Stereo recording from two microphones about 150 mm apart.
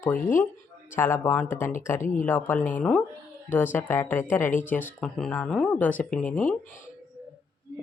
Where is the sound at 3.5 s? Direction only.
15° left (ahead or behind).